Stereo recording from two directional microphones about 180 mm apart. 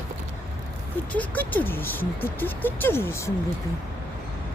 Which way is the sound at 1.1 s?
10° left (ahead or behind).